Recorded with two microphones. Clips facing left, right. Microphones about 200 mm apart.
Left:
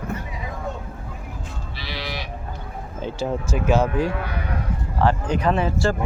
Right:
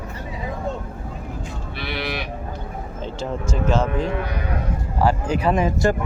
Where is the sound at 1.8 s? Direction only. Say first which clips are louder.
Right 4 dB; 60° right (ahead or behind).